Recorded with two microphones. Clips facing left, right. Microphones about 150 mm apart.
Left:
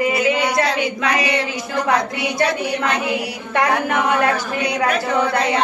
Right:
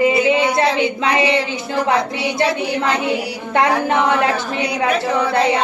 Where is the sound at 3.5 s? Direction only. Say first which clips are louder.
Right 2 dB; 25° right (ahead or behind).